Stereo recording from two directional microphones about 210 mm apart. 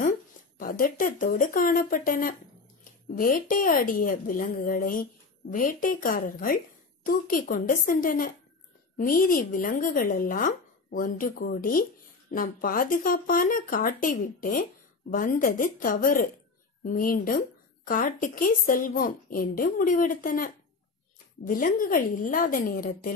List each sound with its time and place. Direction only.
0.6 s a woman's voice: 45° left (ahead or behind)